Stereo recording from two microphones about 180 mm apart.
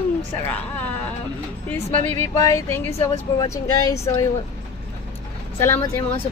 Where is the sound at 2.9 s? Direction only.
35° left (ahead or behind).